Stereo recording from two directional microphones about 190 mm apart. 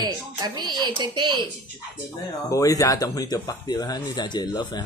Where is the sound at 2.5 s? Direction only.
15° left (ahead or behind).